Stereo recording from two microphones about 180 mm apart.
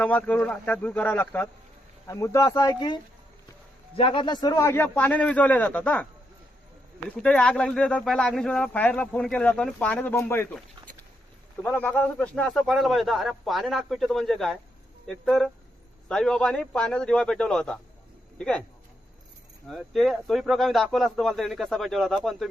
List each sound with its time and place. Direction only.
0.0 s speech: 10° left (ahead or behind)
7.2 s speech: 5° left (ahead or behind)
11.6 s a man's voice: 10° left (ahead or behind)
19.6 s a man's voice: centre (ahead or behind)